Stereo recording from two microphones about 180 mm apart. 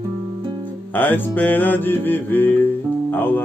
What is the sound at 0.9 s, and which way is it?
Music, 10° left (ahead or behind).